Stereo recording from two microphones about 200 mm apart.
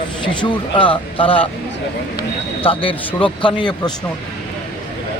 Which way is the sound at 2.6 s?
25° left (ahead or behind).